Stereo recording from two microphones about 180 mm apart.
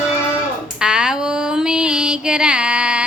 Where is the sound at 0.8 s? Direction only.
5° right (ahead or behind).